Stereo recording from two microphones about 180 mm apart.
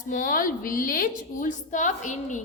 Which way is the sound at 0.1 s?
50° left (ahead or behind).